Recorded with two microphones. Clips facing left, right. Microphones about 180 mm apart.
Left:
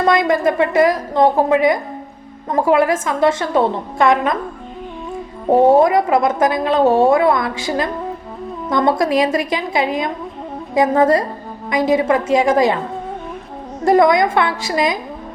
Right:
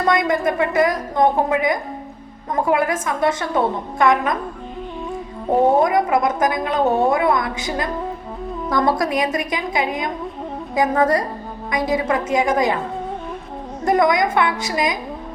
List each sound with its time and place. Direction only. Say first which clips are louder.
0.1 s a woman's voice: left 2 dB; 25° left (ahead or behind)
5.8 s a woman's voice: left 3 dB; 25° left (ahead or behind)
13.8 s a woman's voice: left 4 dB; 30° left (ahead or behind)